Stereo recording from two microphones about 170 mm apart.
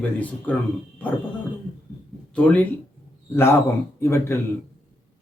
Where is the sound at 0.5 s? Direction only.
10° left (ahead or behind).